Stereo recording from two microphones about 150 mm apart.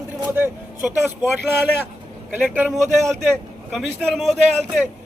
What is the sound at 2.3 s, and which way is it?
Speech, 10° right (ahead or behind).